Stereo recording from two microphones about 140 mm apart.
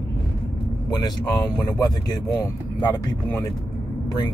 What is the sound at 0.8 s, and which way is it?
A man's voice, 30° left (ahead or behind).